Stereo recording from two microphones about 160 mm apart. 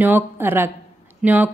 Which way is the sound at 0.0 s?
15° right (ahead or behind).